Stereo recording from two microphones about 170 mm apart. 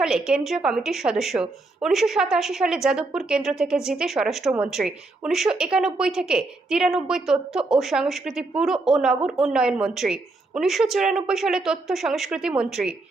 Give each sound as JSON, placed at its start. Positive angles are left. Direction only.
{"t": 0.0, "sound": "a woman's voice", "side_deg": -5}